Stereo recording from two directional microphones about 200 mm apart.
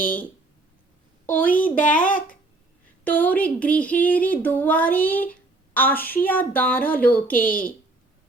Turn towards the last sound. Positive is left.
turn(degrees=45)  # may be behind; listen again after turning